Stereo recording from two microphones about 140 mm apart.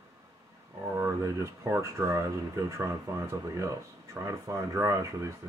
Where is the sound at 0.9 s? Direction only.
20° right (ahead or behind).